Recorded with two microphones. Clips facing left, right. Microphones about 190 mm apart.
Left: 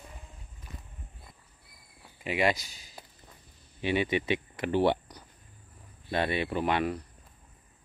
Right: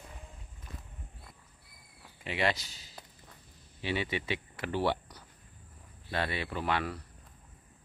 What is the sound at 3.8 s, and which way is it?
Speech, 15° left (ahead or behind).